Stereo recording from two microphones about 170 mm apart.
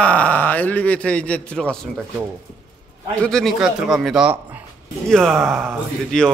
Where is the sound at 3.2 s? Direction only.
Centre (ahead or behind).